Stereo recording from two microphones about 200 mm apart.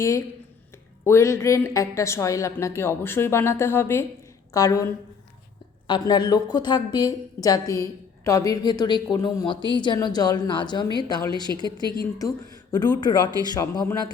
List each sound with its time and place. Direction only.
1.0 s a woman's voice: 15° left (ahead or behind)
5.9 s a woman's voice: 20° left (ahead or behind)
11.4 s a woman's voice: 20° right (ahead or behind)
12.7 s a woman's voice: 20° left (ahead or behind)